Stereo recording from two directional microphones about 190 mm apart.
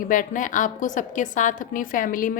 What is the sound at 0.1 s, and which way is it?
A woman's voice, 45° left (ahead or behind).